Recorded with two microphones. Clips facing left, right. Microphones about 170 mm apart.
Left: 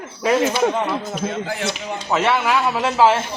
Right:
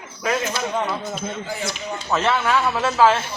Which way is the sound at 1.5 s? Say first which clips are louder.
Left 3 dB; 85° left.